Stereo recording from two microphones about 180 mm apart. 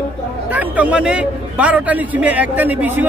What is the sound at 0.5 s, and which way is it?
A man's voice, 10° right (ahead or behind).